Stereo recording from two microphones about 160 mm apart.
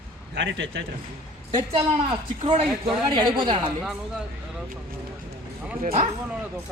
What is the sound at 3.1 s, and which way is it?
Speech, 30° right (ahead or behind).